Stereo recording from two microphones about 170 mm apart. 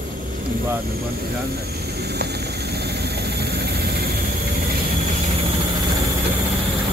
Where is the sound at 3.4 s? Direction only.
70° right (ahead or behind).